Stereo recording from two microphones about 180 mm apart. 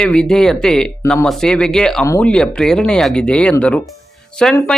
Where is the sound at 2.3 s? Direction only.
5° left (ahead or behind).